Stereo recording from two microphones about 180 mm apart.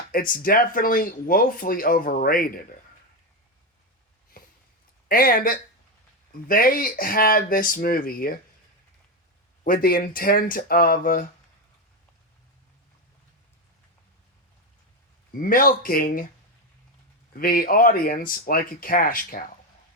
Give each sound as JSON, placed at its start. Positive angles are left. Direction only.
{"t": 0.1, "sound": "speech", "side_deg": 50}
{"t": 4.4, "sound": "a sound", "side_deg": 50}
{"t": 5.0, "sound": "speech", "side_deg": 55}
{"t": 9.6, "sound": "speech", "side_deg": 55}
{"t": 15.3, "sound": "speech", "side_deg": 50}
{"t": 17.3, "sound": "speech", "side_deg": 55}